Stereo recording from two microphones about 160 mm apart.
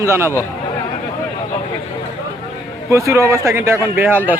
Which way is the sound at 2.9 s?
20° right (ahead or behind).